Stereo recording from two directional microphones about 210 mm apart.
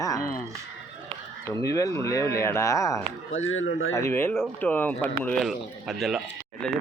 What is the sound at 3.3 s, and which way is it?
Speech, 70° left (ahead or behind).